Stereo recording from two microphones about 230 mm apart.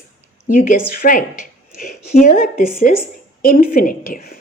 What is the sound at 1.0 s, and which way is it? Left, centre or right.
Speech, left.